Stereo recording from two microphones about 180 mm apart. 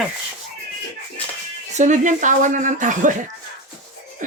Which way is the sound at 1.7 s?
45° right (ahead or behind).